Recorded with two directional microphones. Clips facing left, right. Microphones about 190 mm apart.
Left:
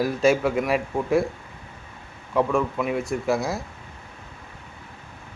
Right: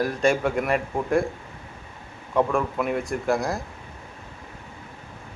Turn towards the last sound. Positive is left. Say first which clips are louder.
# even
turn(degrees=5)  # may be behind; listen again after turning